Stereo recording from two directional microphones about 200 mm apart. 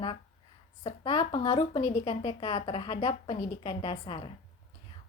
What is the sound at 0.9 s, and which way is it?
Speech, 25° left (ahead or behind).